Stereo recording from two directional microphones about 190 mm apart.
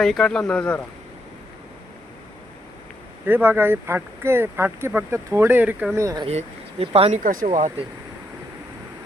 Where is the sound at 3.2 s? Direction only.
10° right (ahead or behind).